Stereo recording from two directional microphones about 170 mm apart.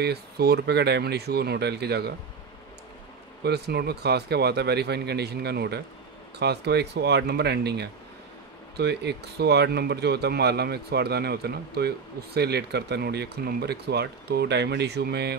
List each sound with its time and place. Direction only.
0.0 s speech: 70° right (ahead or behind)
3.4 s speech: 75° right (ahead or behind)